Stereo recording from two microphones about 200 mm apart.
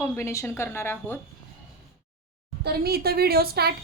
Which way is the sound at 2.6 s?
50° right (ahead or behind).